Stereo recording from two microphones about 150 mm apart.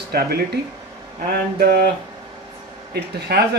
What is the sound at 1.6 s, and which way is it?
Speech, 90° right.